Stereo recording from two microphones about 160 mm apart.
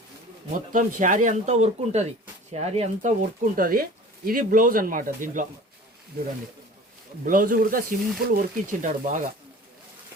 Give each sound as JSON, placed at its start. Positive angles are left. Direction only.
{"t": 0.5, "sound": "speech", "side_deg": -55}
{"t": 7.3, "sound": "speech", "side_deg": -60}